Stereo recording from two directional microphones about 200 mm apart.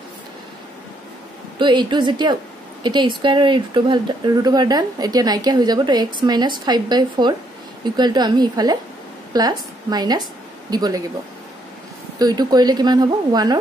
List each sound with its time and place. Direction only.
1.6 s a woman's voice: 25° right (ahead or behind)
12.2 s speech: 20° right (ahead or behind)